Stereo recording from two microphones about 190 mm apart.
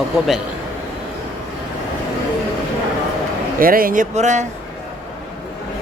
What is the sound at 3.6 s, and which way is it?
Speech, 50° right (ahead or behind).